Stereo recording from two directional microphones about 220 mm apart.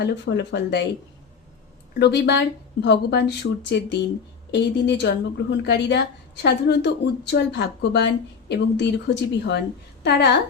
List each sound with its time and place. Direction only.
0.0 s a woman's voice: 50° left (ahead or behind)
2.0 s a woman's voice: 50° left (ahead or behind)